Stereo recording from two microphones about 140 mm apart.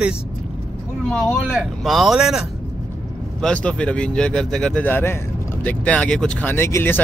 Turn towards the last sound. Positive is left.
turn(degrees=15)  # may be behind; listen again after turning